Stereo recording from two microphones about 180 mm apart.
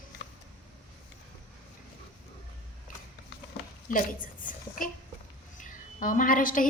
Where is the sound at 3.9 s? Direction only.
50° left (ahead or behind).